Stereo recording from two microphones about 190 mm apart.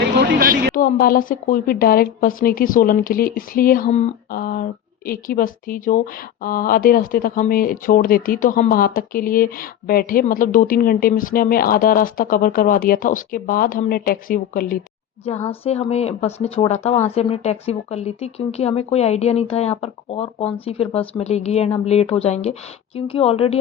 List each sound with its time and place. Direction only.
0.0 s a sound: 55° right (ahead or behind)
0.8 s speech: 50° left (ahead or behind)
3.8 s speech: 35° left (ahead or behind)
15.4 s speech: 30° left (ahead or behind)